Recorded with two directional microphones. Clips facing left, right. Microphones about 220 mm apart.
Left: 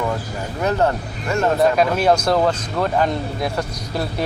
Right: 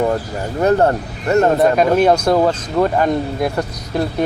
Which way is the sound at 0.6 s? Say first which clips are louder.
Right 5 dB; 45° right (ahead or behind).